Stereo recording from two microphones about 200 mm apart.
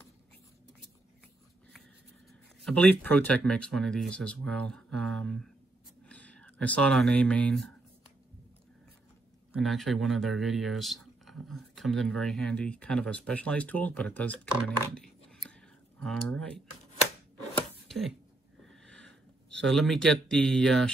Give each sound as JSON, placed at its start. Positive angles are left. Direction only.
{"t": 2.6, "sound": "speech", "side_deg": 5}
{"t": 9.6, "sound": "speech", "side_deg": 0}
{"t": 15.0, "sound": "scissors", "side_deg": 5}
{"t": 16.0, "sound": "speech", "side_deg": 5}
{"t": 17.8, "sound": "a sound", "side_deg": 0}